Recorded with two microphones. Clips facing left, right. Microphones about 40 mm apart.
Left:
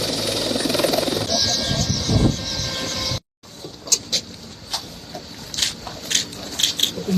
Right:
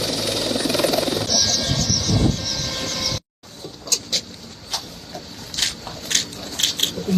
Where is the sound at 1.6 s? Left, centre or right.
Centre.